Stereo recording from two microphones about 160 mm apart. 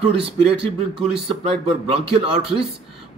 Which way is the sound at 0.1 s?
35° right (ahead or behind).